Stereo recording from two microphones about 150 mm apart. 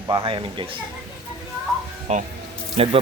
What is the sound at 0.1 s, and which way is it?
Speech, 30° right (ahead or behind).